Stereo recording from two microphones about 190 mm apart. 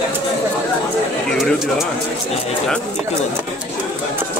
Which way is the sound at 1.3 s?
Centre (ahead or behind).